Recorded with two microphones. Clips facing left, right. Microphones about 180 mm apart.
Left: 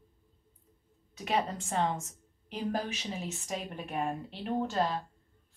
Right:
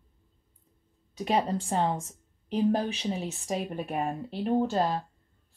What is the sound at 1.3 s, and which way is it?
A woman's voice, 35° right (ahead or behind).